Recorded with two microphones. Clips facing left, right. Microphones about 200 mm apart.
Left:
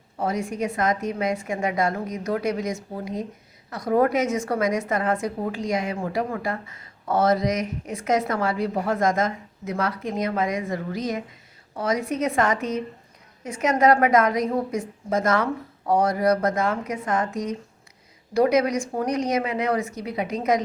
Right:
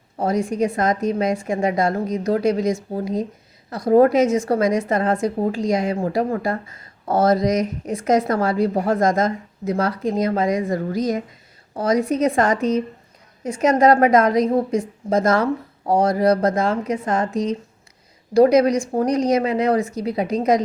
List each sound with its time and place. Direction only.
0.2 s a woman's voice: 35° right (ahead or behind)